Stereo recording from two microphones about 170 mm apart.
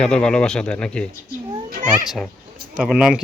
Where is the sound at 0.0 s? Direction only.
5° left (ahead or behind).